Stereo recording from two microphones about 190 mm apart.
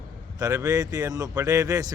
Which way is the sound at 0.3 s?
15° right (ahead or behind).